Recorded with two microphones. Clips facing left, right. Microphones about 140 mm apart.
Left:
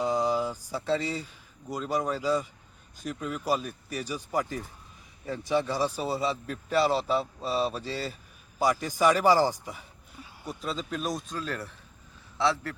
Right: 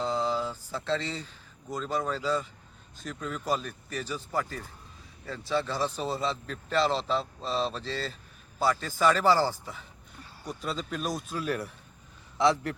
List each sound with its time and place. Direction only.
0.0 s a man's voice: 15° left (ahead or behind); by 12.7 s 15° right (ahead or behind)